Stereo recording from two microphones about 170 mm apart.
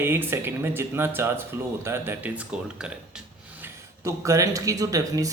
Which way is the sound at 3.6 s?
15° right (ahead or behind).